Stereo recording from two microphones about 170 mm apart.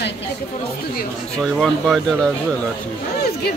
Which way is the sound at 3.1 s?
70° left (ahead or behind).